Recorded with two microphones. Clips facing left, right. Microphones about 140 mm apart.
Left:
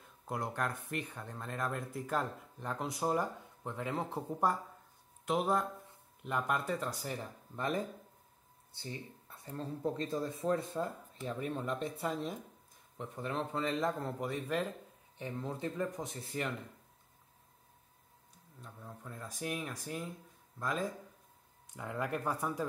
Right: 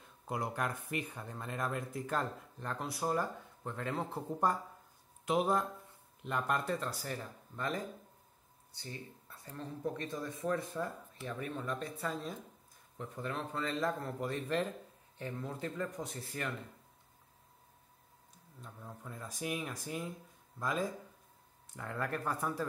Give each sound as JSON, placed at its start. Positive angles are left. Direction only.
{"t": 0.3, "sound": "speech", "side_deg": -5}
{"t": 5.2, "sound": "speech", "side_deg": 0}
{"t": 15.1, "sound": "speech", "side_deg": 20}
{"t": 18.6, "sound": "speech", "side_deg": 0}
{"t": 21.7, "sound": "speech", "side_deg": 10}